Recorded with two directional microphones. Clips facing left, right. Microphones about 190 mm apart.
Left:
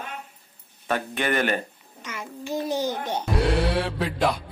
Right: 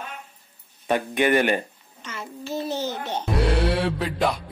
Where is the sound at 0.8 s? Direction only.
15° right (ahead or behind).